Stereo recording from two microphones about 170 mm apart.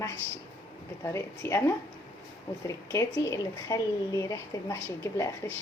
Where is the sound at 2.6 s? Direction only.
20° left (ahead or behind).